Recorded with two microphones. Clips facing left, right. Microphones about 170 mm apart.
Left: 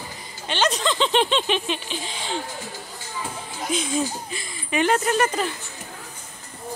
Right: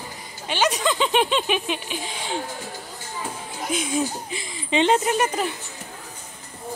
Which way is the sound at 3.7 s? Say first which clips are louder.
Even; 10° right (ahead or behind).